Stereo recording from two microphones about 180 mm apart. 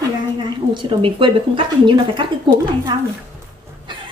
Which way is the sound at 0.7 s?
30° right (ahead or behind).